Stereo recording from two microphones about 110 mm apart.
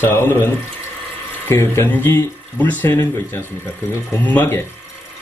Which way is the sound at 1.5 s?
20° left (ahead or behind).